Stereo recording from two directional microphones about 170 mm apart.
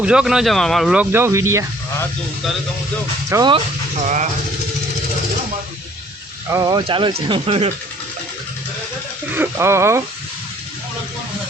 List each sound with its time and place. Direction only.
0.0 s speech: 5° right (ahead or behind)
1.1 s speech: 15° right (ahead or behind)
3.2 s speech: 20° right (ahead or behind)
4.0 s speech: 45° right (ahead or behind)
6.5 s speech: 25° right (ahead or behind)
9.3 s speech: 15° right (ahead or behind)